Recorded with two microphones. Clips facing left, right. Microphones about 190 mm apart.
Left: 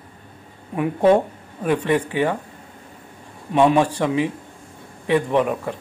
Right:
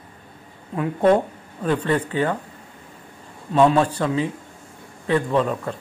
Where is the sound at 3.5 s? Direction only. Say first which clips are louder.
Even; 15° left (ahead or behind).